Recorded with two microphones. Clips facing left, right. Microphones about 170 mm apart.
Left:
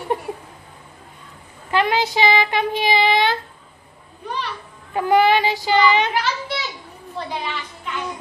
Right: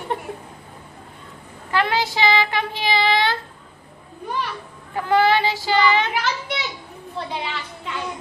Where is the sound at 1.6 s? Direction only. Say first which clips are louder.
Left 2 dB; 15° left (ahead or behind).